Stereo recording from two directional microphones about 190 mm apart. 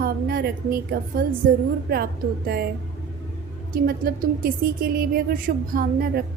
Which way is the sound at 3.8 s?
50° right (ahead or behind).